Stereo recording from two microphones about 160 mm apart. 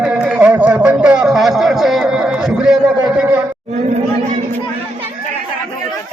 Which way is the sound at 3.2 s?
10° right (ahead or behind).